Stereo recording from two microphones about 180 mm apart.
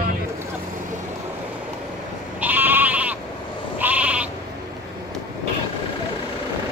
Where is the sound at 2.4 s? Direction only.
10° right (ahead or behind).